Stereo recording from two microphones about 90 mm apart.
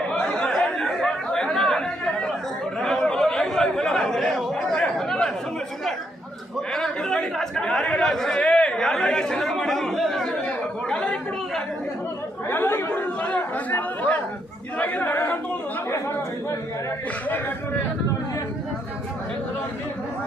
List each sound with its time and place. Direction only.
0.1 s chatter: 10° left (ahead or behind)
6.7 s chatter: 5° left (ahead or behind)
12.4 s speech: 25° left (ahead or behind)